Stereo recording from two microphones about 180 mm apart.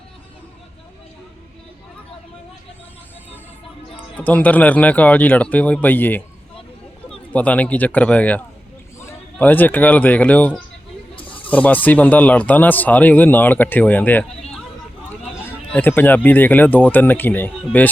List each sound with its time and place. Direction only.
4.2 s speech: 10° left (ahead or behind)
11.1 s snake: 30° left (ahead or behind)
11.5 s speech: 10° left (ahead or behind)
15.7 s speech: 10° left (ahead or behind)